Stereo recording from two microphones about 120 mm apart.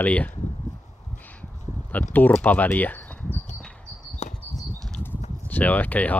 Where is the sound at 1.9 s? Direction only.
15° left (ahead or behind).